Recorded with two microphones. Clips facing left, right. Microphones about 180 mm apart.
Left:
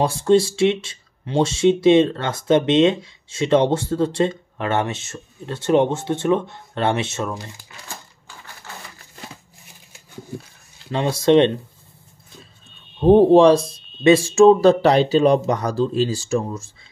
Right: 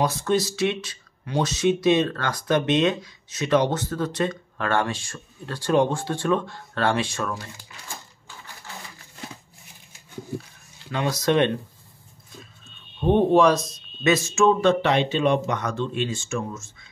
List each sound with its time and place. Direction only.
0.0 s speech: 30° left (ahead or behind)
10.9 s speech: 30° left (ahead or behind)
13.0 s speech: 35° left (ahead or behind)